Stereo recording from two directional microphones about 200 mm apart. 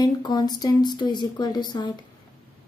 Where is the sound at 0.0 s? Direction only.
20° left (ahead or behind).